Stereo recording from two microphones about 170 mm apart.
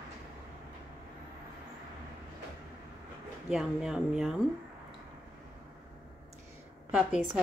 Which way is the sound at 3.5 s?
5° right (ahead or behind).